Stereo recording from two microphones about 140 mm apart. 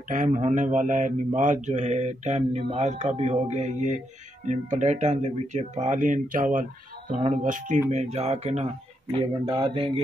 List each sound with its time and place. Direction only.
0.1 s speech: 65° right (ahead or behind)
7.9 s speech: 55° right (ahead or behind)
9.2 s speech: 40° right (ahead or behind)